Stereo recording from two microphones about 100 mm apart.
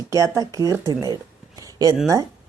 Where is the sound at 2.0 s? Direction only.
35° right (ahead or behind).